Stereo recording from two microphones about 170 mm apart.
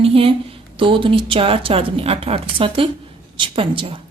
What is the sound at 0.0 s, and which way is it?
A woman's voice, 35° right (ahead or behind).